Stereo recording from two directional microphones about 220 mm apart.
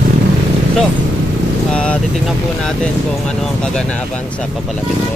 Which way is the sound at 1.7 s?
5° left (ahead or behind).